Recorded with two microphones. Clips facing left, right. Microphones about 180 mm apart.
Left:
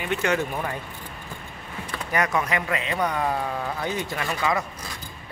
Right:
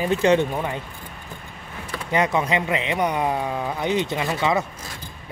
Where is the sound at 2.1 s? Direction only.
25° right (ahead or behind).